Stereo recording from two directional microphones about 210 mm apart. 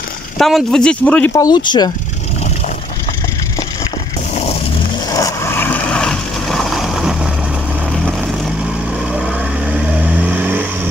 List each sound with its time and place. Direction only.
0.4 s speech: centre (ahead or behind); by 1.9 s 20° left (ahead or behind)
5.1 s vehicle: 15° left (ahead or behind)
9.1 s vehicle: 5° right (ahead or behind)